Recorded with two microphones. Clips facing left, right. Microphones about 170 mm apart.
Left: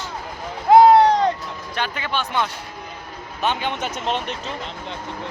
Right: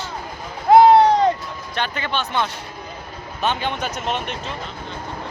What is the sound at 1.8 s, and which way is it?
A man's voice, 10° left (ahead or behind).